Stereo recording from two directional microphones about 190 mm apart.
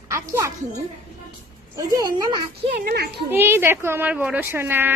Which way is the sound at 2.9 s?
55° right (ahead or behind).